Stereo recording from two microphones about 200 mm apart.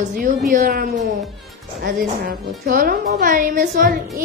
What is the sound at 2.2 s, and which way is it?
A woman's voice, 45° right (ahead or behind).